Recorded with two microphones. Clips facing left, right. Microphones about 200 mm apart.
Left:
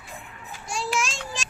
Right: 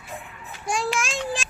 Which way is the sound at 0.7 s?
55° right (ahead or behind).